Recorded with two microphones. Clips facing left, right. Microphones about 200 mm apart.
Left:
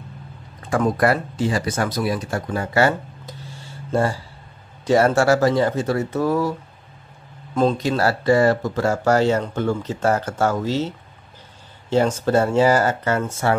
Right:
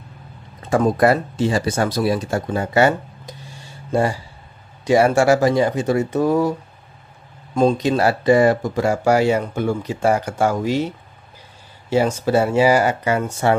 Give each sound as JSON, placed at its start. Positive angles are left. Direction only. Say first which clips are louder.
{"t": 0.6, "sound": "speech", "louder": "right 3 dB", "side_deg": -20}
{"t": 7.5, "sound": "speech", "louder": "right 3 dB", "side_deg": -15}
{"t": 11.9, "sound": "speech", "louder": "right 1 dB", "side_deg": -10}